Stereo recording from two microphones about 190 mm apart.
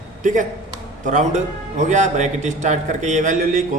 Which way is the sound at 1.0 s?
40° right (ahead or behind).